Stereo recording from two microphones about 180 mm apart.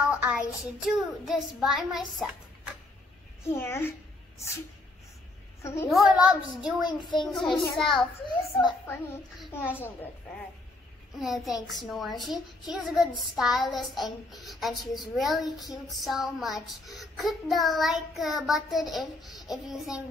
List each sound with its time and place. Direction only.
0.1 s child singing: 5° right (ahead or behind)
3.4 s a child's voice: 15° left (ahead or behind)
5.6 s a child's voice: 15° left (ahead or behind)
5.9 s child singing: 5° right (ahead or behind)
6.9 s a child's voice: 25° left (ahead or behind)
7.2 s child singing: centre (ahead or behind)
9.5 s a child's voice: 10° left (ahead or behind)
11.1 s child singing: centre (ahead or behind)